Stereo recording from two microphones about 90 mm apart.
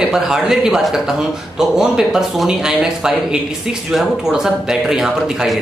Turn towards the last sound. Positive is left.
turn(degrees=-5)  # may be behind; listen again after turning